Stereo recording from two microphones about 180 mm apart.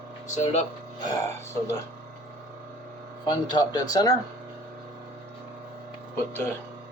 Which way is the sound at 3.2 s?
25° left (ahead or behind).